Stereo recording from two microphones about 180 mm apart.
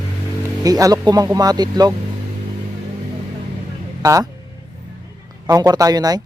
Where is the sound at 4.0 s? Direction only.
20° right (ahead or behind).